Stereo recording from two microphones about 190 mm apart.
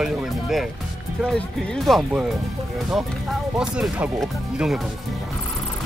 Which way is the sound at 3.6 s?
5° right (ahead or behind).